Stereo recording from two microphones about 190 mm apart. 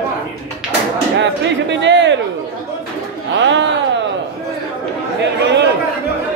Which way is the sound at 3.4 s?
70° right (ahead or behind).